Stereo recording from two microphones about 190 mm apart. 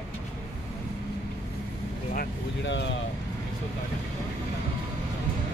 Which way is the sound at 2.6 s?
70° left (ahead or behind).